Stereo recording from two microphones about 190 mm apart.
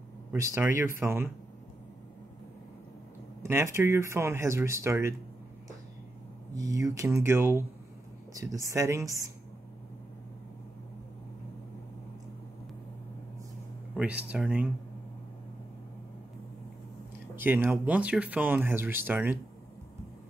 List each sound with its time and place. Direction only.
0.3 s speech: 15° right (ahead or behind)
3.4 s speech: 15° right (ahead or behind)
6.5 s speech: 20° right (ahead or behind)
13.9 s speech: 5° right (ahead or behind)
17.4 s speech: 10° right (ahead or behind)